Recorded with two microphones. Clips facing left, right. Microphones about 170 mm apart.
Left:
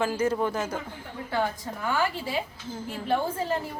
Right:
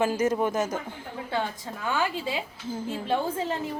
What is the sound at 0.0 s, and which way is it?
Speech, 20° right (ahead or behind).